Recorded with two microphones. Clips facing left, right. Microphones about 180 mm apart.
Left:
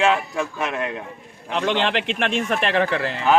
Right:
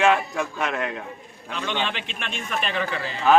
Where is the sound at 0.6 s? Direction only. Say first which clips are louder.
Left 1 dB; 20° left (ahead or behind).